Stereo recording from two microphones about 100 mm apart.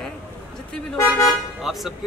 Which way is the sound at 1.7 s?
5° right (ahead or behind).